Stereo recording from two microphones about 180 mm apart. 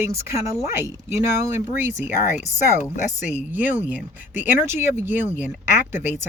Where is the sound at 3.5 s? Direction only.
45° left (ahead or behind).